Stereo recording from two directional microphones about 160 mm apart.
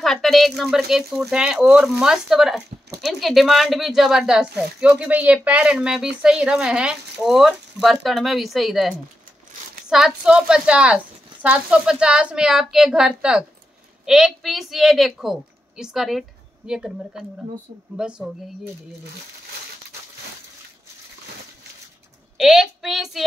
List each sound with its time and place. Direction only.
0.0 s speech: centre (ahead or behind)
22.4 s speech: centre (ahead or behind)